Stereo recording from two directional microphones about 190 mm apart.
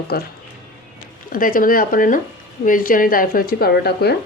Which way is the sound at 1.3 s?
45° left (ahead or behind).